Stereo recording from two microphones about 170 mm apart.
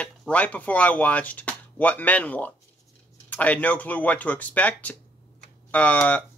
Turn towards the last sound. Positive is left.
turn(degrees=10)  # may be behind; listen again after turning